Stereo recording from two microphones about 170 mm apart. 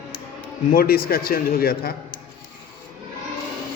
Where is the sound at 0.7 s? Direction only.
60° left (ahead or behind).